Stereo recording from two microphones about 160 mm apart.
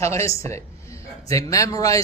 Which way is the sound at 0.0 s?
15° left (ahead or behind).